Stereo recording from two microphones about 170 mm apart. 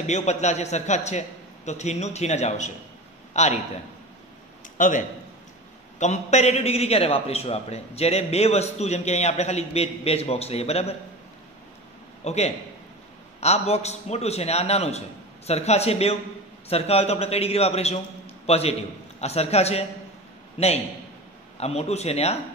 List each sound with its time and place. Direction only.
0.0 s a man's voice: 40° left (ahead or behind)
4.7 s a man's voice: 50° left (ahead or behind)
12.3 s a man's voice: 40° left (ahead or behind)